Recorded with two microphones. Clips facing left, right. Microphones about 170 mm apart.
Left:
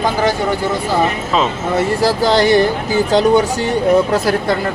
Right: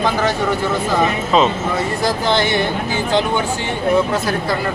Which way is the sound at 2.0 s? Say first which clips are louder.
Left 4 dB; 35° left (ahead or behind).